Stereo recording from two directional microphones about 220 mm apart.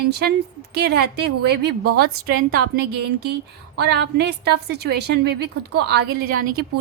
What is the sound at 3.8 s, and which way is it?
A woman's voice, 50° right (ahead or behind).